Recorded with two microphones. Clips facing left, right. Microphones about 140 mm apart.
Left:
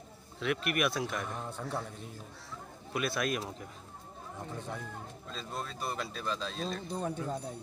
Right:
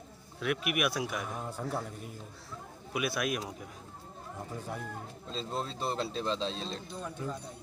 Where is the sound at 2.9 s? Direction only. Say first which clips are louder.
Even; 5° right (ahead or behind).